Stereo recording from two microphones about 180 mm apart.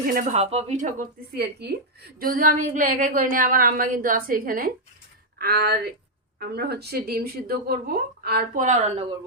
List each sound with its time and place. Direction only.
0.1 s a woman's voice: 50° right (ahead or behind)
0.3 s speech: 35° right (ahead or behind)
1.4 s a woman's voice: 65° right (ahead or behind); by 9.0 s 40° right (ahead or behind)